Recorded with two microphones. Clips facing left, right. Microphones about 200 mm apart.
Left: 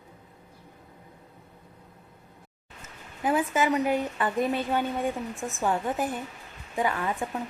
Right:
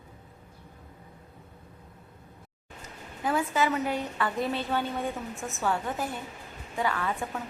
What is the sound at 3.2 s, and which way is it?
A woman's voice, 20° left (ahead or behind).